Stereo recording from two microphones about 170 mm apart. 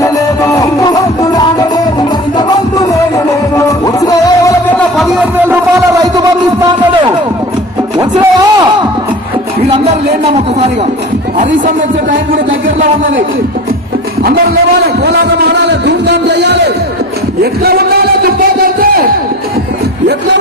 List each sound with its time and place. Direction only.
0.0 s music: 20° left (ahead or behind)
4.9 s music: 10° right (ahead or behind)
15.0 s music: 80° right
17.4 s a sound: 65° right (ahead or behind)